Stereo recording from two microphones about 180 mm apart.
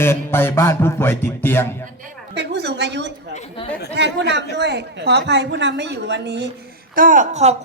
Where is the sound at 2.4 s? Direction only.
70° right (ahead or behind).